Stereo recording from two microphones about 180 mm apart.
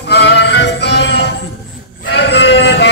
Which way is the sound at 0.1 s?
70° left (ahead or behind).